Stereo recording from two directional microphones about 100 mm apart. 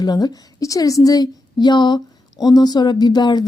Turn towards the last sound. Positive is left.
turn(degrees=45)  # may be behind; listen again after turning